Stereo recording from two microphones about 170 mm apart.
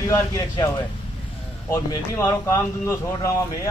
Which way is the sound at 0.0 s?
20° left (ahead or behind).